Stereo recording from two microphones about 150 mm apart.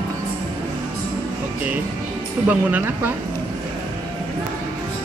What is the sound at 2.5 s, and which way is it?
Speech, 10° right (ahead or behind).